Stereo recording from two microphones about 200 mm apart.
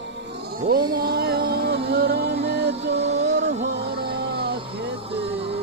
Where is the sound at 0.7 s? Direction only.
50° right (ahead or behind).